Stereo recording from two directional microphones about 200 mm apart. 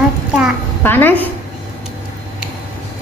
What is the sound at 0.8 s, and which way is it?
Speech, 10° left (ahead or behind).